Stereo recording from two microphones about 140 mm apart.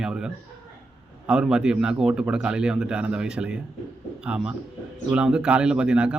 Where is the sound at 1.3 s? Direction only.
5° right (ahead or behind).